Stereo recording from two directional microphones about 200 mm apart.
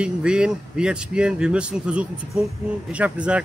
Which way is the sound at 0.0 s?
5° right (ahead or behind).